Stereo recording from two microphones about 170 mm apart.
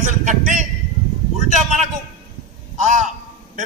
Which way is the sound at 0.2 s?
45° right (ahead or behind).